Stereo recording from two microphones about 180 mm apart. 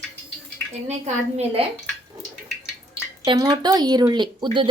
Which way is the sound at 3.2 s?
25° right (ahead or behind).